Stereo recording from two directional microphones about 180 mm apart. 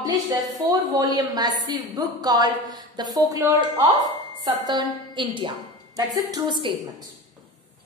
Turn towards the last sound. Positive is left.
turn(degrees=-25)  # may be behind; listen again after turning